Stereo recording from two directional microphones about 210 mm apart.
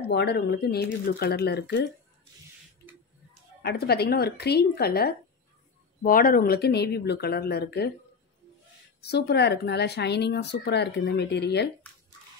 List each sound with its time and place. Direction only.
0.1 s speech: 50° left (ahead or behind)
3.6 s speech: 50° left (ahead or behind)
9.0 s speech: 50° left (ahead or behind)